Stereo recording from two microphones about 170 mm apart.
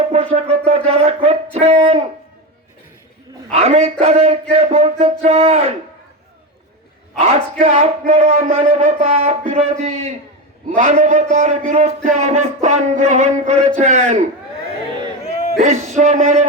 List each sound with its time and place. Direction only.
0.1 s a man's voice: 40° right (ahead or behind)
3.5 s a man's voice: 40° right (ahead or behind)
7.2 s a man's voice: 35° right (ahead or behind)
15.5 s a man's voice: 40° right (ahead or behind)